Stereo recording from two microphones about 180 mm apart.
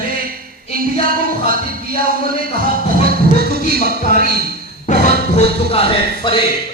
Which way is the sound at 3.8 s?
45° left (ahead or behind).